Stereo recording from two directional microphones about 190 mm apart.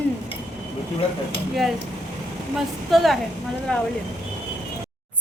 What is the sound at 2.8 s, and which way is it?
A woman's voice, centre (ahead or behind).